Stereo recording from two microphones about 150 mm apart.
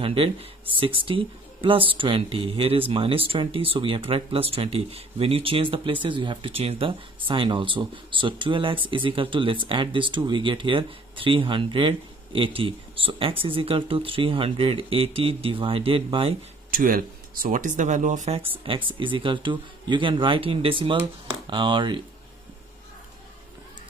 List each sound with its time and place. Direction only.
0.0 s speech: 35° right (ahead or behind)
16.7 s speech: 70° right (ahead or behind); by 18.5 s 45° right (ahead or behind)
18.6 s speech: 35° right (ahead or behind)